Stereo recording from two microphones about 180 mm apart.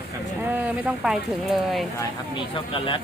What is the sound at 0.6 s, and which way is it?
Speech, 5° right (ahead or behind).